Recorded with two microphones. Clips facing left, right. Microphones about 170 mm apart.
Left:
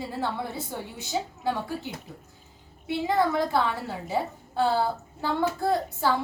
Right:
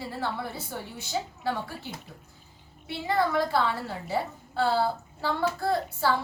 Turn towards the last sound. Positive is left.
turn(degrees=15)  # may be behind; listen again after turning